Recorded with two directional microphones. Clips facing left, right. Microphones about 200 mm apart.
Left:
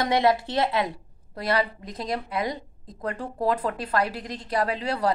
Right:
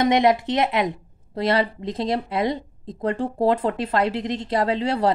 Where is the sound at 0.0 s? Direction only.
20° right (ahead or behind).